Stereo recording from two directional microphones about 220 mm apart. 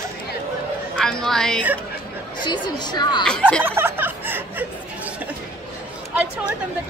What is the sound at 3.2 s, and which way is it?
Speech, 5° left (ahead or behind).